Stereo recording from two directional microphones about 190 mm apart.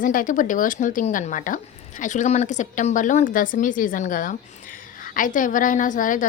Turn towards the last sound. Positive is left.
turn(degrees=45)  # may be behind; listen again after turning